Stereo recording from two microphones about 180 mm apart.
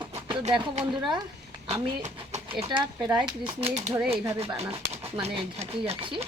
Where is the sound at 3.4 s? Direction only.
35° right (ahead or behind).